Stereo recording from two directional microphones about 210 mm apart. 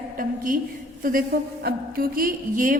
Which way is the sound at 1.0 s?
45° right (ahead or behind).